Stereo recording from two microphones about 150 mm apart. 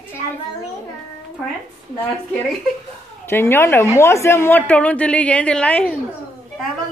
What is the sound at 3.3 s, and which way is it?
A woman's voice, 15° left (ahead or behind).